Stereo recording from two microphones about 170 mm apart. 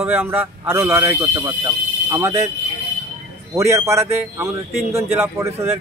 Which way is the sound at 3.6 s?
15° right (ahead or behind).